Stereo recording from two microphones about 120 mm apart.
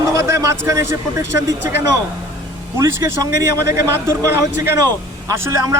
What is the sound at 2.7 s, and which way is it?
A man's voice, 25° right (ahead or behind).